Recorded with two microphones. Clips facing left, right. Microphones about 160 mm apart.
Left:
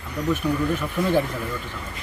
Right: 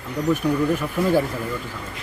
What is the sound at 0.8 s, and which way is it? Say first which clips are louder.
Speech: right 2 dB; 10° right (ahead or behind).